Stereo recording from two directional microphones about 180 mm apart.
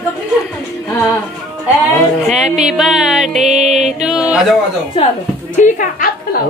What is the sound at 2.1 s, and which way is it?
A woman's voice, centre (ahead or behind).